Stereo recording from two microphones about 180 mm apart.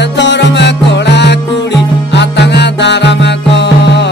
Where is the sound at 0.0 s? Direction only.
80° left.